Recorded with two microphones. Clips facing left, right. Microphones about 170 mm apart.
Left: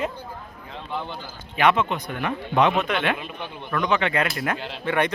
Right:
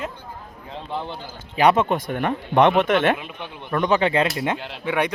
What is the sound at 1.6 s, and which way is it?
Speech, 40° right (ahead or behind).